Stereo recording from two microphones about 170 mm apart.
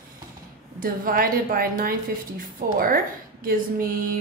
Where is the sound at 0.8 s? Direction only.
55° right (ahead or behind).